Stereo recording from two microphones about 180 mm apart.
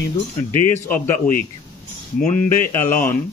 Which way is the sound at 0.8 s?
10° left (ahead or behind).